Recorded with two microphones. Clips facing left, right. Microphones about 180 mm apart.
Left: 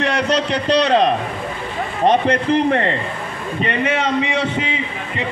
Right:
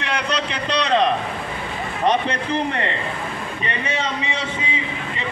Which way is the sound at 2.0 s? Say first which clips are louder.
Left 5 dB; 50° left (ahead or behind).